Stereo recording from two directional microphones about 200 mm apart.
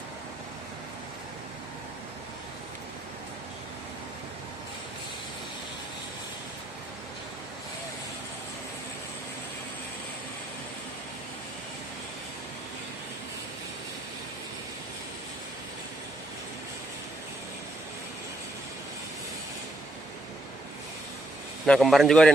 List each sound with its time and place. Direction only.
21.6 s a man's voice: centre (ahead or behind)